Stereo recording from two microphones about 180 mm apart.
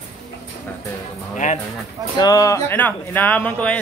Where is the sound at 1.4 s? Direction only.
45° left (ahead or behind).